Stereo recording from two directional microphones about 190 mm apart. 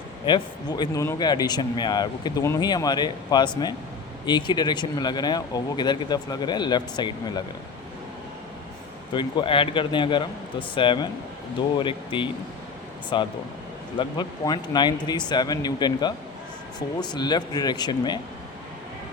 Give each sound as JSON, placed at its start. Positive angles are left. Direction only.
{"t": 0.3, "sound": "speech", "side_deg": 25}
{"t": 9.1, "sound": "speech", "side_deg": 25}